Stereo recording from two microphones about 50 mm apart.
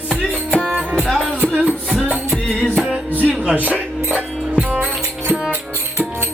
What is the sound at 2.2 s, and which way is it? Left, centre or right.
Music, centre.